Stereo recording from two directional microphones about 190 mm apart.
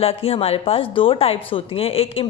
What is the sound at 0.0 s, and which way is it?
Speech, 30° left (ahead or behind).